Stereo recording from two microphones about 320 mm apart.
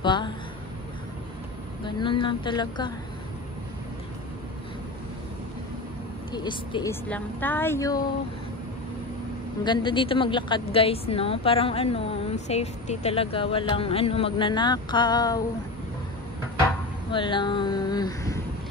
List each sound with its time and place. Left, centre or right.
0.0 s speech: centre
1.9 s speech: centre
6.3 s speech: centre
9.7 s speech: centre
17.1 s speech: centre